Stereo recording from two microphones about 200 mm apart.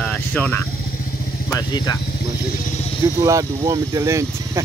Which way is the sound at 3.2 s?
15° right (ahead or behind).